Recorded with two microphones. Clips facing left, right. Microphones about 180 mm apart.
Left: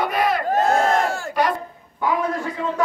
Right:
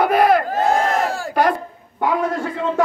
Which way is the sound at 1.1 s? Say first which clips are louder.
Right 2 dB; 35° right (ahead or behind).